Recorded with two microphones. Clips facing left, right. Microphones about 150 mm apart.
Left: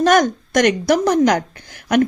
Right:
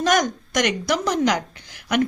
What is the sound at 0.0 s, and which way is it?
A woman's voice, 50° left (ahead or behind).